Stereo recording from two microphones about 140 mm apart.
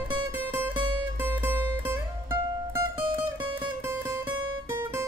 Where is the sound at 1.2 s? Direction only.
15° right (ahead or behind).